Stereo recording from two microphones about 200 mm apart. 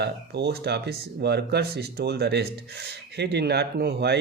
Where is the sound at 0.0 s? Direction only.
55° right (ahead or behind).